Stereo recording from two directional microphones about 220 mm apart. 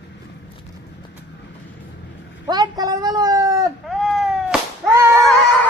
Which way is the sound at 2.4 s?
15° right (ahead or behind).